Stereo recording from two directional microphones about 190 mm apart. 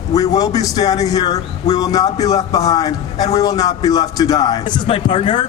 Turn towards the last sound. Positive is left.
turn(degrees=25)  # may be behind; listen again after turning